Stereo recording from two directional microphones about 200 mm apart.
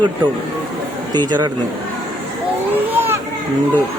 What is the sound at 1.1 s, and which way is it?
Speech, 20° right (ahead or behind).